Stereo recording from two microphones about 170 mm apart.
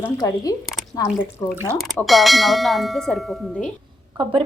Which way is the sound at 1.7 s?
Centre (ahead or behind).